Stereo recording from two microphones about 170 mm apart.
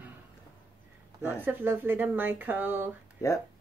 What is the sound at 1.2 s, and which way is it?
Speech, 10° right (ahead or behind).